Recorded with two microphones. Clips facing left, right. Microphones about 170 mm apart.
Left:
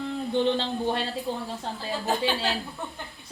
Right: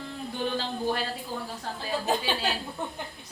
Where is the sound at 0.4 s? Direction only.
25° left (ahead or behind).